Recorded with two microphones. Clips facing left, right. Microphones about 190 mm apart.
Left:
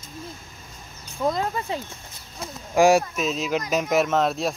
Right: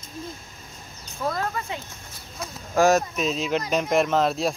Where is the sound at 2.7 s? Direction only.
15° left (ahead or behind).